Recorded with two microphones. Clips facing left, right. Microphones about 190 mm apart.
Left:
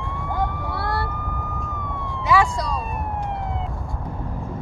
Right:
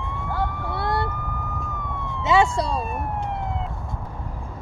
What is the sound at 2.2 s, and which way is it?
Police car, 25° right (ahead or behind).